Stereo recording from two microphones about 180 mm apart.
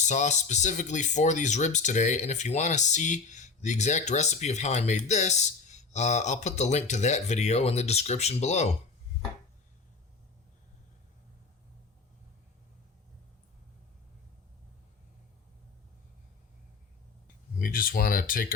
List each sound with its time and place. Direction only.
0.0 s speech: 40° left (ahead or behind)
17.6 s speech: 55° left (ahead or behind)